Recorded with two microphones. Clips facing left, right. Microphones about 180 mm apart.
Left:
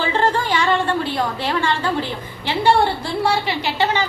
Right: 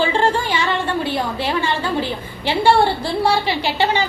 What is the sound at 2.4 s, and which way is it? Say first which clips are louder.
A woman's voice: right 2 dB; 30° right (ahead or behind).